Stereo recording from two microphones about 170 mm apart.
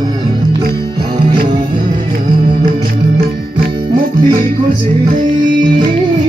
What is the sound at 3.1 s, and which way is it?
Music, 60° right (ahead or behind).